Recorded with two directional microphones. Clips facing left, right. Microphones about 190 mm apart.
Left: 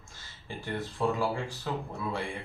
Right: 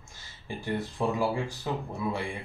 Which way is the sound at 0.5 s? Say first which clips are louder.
Right 3 dB; 15° right (ahead or behind).